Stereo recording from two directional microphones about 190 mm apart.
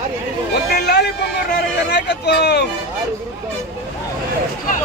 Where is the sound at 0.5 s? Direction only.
60° left (ahead or behind).